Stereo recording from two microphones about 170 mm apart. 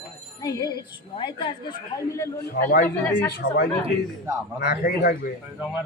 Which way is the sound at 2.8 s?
15° left (ahead or behind).